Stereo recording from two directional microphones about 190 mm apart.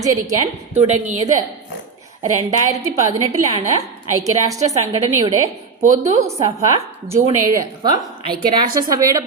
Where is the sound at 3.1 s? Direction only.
20° right (ahead or behind).